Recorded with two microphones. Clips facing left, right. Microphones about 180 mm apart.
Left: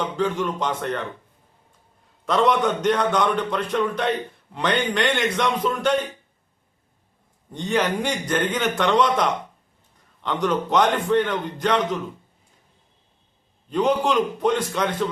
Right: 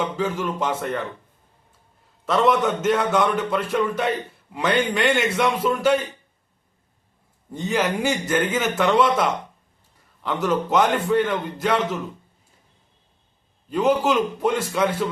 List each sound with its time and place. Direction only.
0.0 s a man's voice: 5° right (ahead or behind)
2.2 s a man's voice: 5° right (ahead or behind)
7.5 s a man's voice: 5° right (ahead or behind)
13.7 s a man's voice: 5° right (ahead or behind)